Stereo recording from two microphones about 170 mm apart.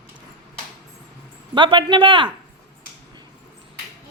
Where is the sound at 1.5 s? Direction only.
30° right (ahead or behind).